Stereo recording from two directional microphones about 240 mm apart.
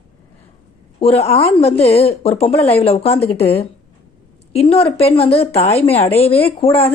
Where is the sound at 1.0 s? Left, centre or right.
Left.